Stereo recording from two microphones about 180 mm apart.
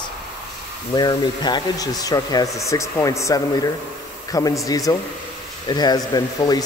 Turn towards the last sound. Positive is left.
turn(degrees=20)  # may be behind; listen again after turning